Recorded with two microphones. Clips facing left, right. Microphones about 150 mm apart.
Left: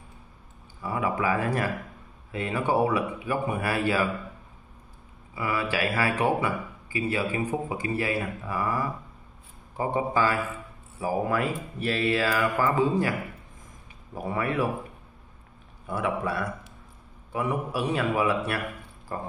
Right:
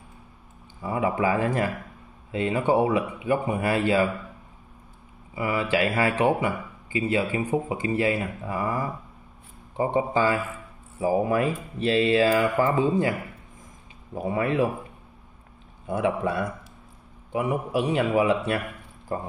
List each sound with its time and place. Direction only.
0.8 s speech: 25° right (ahead or behind)
5.3 s speech: 20° right (ahead or behind)
14.1 s speech: 20° right (ahead or behind)
15.9 s speech: 25° right (ahead or behind)